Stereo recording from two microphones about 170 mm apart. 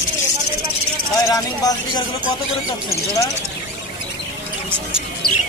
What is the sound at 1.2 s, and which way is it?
Speech, 20° left (ahead or behind).